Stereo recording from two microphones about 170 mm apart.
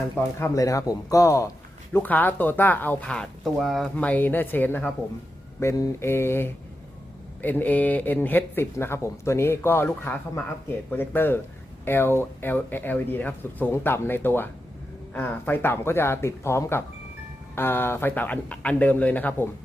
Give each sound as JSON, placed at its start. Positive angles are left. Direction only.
{"t": 0.2, "sound": "speech", "side_deg": 15}